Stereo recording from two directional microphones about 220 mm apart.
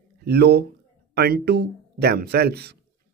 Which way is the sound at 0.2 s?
45° right (ahead or behind).